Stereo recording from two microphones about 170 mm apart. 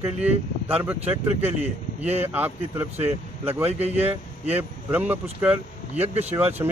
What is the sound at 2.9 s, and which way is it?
Speech, 35° right (ahead or behind).